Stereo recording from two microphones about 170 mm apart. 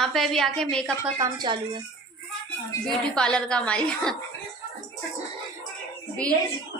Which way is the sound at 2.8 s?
5° left (ahead or behind).